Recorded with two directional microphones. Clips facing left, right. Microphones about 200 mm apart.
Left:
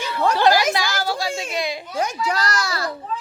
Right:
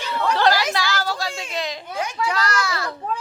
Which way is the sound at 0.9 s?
10° left (ahead or behind).